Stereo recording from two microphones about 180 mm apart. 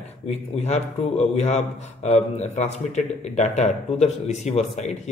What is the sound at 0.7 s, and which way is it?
Speech, 35° left (ahead or behind).